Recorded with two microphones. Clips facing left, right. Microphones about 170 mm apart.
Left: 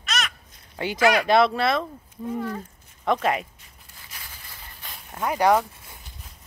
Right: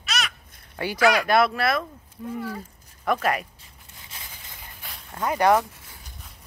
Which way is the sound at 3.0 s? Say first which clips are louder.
Left 1 dB; 25° left (ahead or behind).